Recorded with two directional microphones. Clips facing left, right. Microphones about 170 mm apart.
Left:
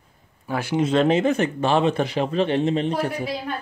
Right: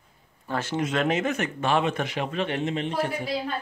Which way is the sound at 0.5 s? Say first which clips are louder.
Left 3 dB; 10° left (ahead or behind).